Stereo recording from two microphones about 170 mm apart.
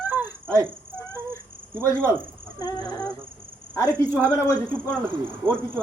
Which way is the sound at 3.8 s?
10° left (ahead or behind).